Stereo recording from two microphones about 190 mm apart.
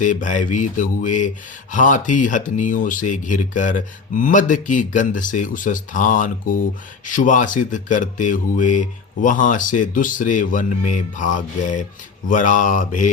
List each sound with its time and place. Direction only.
0.0 s mantra: 40° left (ahead or behind)
1.7 s speech: 45° left (ahead or behind)